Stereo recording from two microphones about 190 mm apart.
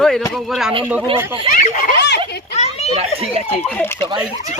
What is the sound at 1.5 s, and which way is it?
Speech, 45° left (ahead or behind).